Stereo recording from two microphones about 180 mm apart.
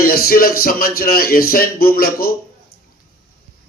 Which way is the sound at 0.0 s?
55° left (ahead or behind).